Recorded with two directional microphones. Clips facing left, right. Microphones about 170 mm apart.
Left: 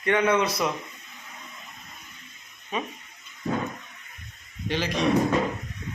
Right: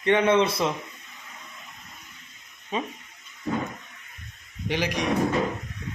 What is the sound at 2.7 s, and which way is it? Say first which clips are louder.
Speech: right 1 dB; 25° right (ahead or behind).